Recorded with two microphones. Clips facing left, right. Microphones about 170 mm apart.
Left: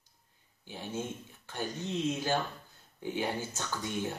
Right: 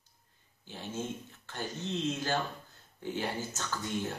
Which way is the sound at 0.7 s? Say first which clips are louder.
Even; 10° left (ahead or behind).